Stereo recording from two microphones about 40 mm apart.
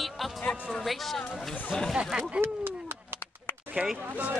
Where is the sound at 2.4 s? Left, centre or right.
Right.